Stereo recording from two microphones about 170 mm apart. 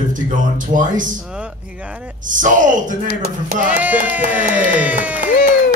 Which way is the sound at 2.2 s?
50° right (ahead or behind).